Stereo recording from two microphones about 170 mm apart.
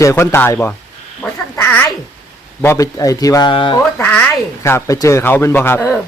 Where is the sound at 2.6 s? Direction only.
15° left (ahead or behind).